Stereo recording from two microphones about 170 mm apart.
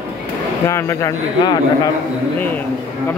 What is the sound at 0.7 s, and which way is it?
Speech, 15° left (ahead or behind).